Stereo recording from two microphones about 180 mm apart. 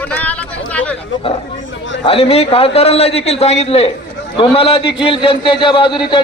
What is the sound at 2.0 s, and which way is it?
A man's voice, 30° left (ahead or behind).